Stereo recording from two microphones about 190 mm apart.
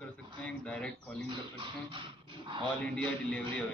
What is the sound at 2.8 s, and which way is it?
Speech, 5° left (ahead or behind).